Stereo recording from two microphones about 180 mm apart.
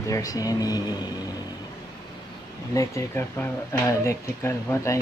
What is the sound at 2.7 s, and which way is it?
Speech, 15° left (ahead or behind).